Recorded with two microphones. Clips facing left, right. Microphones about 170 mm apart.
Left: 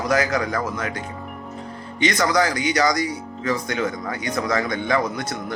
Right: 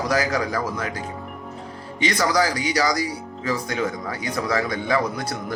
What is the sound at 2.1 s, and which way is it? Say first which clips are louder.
A man's voice: even; 10° right (ahead or behind).